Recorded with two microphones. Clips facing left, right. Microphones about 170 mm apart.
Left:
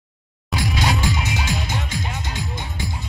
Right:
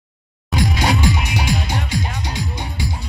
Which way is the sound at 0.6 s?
15° right (ahead or behind).